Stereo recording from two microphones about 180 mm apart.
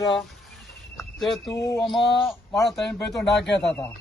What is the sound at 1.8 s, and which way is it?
Speech, centre (ahead or behind).